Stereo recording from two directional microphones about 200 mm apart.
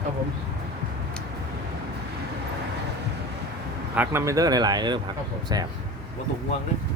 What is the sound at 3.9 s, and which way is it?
Speech, 15° right (ahead or behind).